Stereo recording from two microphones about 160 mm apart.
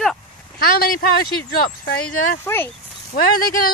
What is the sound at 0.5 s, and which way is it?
Speech, 70° left (ahead or behind).